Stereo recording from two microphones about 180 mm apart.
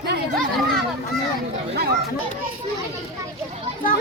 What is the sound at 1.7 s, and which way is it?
Speech, 65° right (ahead or behind).